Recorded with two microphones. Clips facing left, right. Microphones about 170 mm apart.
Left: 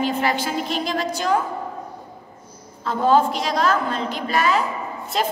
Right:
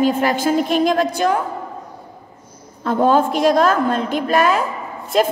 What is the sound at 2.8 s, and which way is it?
A woman's voice, 50° right (ahead or behind).